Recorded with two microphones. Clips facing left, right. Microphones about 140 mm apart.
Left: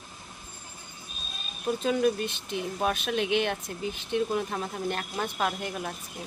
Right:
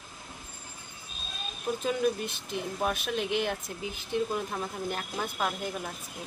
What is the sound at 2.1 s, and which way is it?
Speech, 90° left.